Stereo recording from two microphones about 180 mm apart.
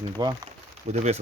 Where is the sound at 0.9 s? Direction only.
40° right (ahead or behind).